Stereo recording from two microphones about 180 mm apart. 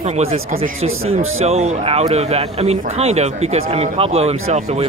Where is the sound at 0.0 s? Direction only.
35° right (ahead or behind).